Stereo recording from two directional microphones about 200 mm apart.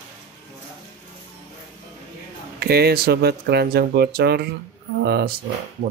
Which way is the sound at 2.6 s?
50° right (ahead or behind).